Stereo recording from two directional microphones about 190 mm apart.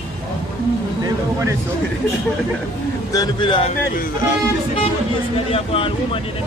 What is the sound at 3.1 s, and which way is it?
Speech, 20° left (ahead or behind).